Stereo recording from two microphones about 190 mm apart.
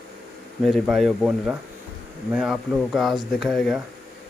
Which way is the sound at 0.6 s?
Centre (ahead or behind).